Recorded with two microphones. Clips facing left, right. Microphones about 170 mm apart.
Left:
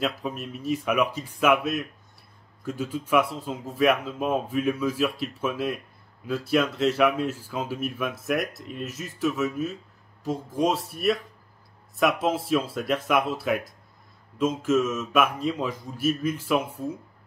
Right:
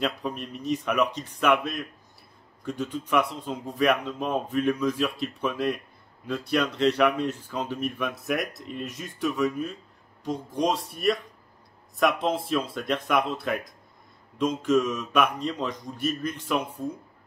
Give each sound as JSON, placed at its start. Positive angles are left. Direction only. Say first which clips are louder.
{"t": 0.0, "sound": "speech", "louder": "even", "side_deg": 5}